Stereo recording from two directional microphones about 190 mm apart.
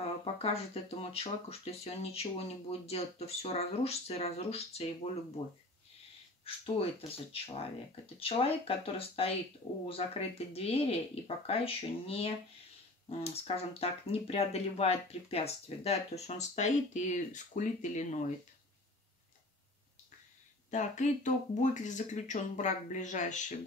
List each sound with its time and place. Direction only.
0.2 s speech: 30° left (ahead or behind)
6.4 s speech: 30° left (ahead or behind)
20.7 s speech: 40° left (ahead or behind)